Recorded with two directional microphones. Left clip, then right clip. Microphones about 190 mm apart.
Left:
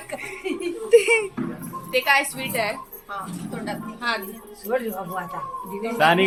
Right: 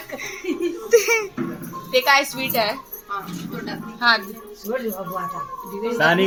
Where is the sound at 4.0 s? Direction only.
30° right (ahead or behind).